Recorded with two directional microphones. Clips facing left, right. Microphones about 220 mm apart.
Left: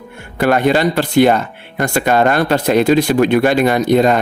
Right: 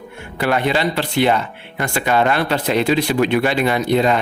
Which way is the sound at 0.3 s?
45° left (ahead or behind).